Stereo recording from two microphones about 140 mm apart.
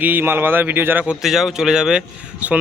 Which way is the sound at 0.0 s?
15° right (ahead or behind).